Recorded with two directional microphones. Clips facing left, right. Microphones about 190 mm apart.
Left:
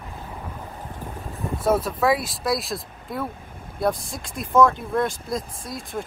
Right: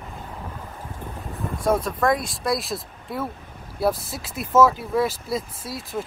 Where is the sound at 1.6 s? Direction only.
5° left (ahead or behind).